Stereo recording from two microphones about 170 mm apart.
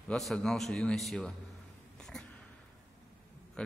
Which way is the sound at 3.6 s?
5° left (ahead or behind).